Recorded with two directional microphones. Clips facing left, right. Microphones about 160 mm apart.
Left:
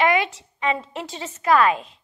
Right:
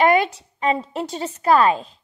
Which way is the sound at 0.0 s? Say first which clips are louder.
Right 4 dB; 40° right (ahead or behind).